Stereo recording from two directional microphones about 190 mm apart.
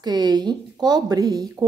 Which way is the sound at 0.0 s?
20° right (ahead or behind).